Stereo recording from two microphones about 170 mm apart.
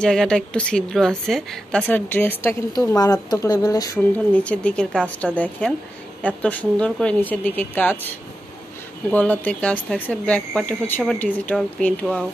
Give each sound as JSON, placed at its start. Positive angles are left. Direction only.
{"t": 0.0, "sound": "a woman's voice", "side_deg": 5}
{"t": 4.3, "sound": "speech", "side_deg": 5}
{"t": 9.1, "sound": "speech", "side_deg": 10}